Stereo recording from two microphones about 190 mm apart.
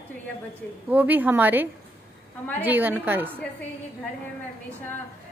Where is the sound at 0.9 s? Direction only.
10° right (ahead or behind).